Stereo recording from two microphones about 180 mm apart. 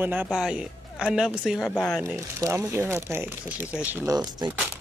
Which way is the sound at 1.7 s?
10° left (ahead or behind).